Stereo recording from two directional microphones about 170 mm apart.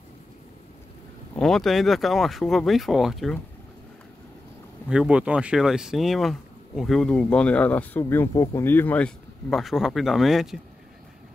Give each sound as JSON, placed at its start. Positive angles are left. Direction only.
{"t": 1.3, "sound": "speech", "side_deg": 0}
{"t": 4.8, "sound": "speech", "side_deg": -5}